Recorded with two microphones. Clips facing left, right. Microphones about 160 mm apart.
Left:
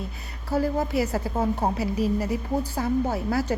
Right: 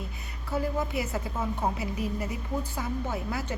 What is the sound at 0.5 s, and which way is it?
A woman's voice, 35° left (ahead or behind).